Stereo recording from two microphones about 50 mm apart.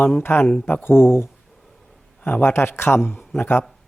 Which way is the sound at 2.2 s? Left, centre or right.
Left.